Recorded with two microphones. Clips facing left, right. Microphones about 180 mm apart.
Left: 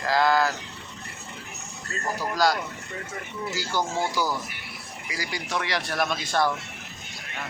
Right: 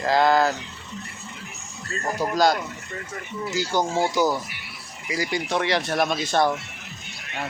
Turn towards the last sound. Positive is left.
turn(degrees=-25)  # may be behind; listen again after turning